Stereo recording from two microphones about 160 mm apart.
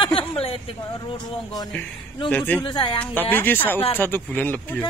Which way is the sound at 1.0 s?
25° left (ahead or behind).